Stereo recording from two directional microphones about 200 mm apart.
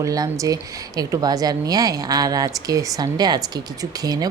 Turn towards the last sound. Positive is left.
turn(degrees=-20)  # may be behind; listen again after turning